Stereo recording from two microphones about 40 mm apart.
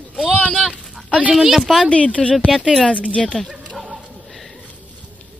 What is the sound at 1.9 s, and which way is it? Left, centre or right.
Speech, left.